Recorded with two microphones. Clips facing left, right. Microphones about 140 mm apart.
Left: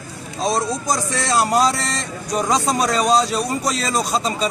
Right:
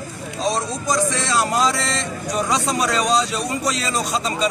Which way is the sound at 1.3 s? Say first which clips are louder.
Left 4 dB; 40° left (ahead or behind).